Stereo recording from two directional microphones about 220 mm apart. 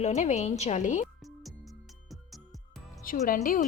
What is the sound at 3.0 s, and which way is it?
Speech, 35° left (ahead or behind).